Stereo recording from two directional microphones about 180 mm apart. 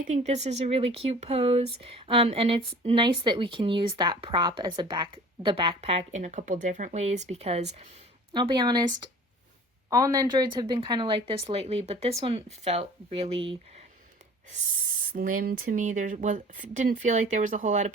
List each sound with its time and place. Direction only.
0.0 s speech: 40° right (ahead or behind)
8.3 s a woman's voice: 25° right (ahead or behind)
15.1 s speech: 50° right (ahead or behind)